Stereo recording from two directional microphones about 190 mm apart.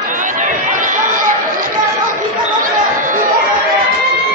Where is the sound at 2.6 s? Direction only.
45° right (ahead or behind).